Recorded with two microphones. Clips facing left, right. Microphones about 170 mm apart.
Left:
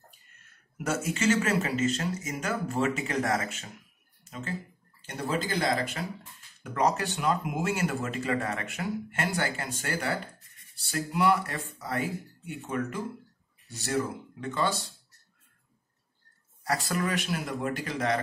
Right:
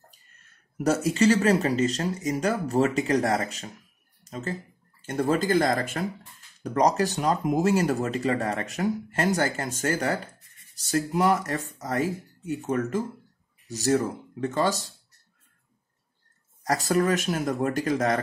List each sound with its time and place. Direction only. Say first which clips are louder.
0.7 s speech: right 7 dB; 35° right (ahead or behind)
16.6 s speech: right 6 dB; 40° right (ahead or behind)